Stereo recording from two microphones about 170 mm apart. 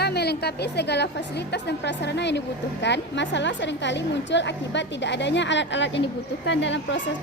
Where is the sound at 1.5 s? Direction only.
90° left.